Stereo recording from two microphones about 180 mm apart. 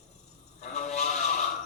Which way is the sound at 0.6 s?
40° left (ahead or behind).